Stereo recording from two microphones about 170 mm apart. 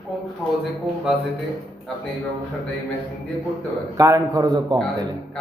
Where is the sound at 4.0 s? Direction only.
20° right (ahead or behind).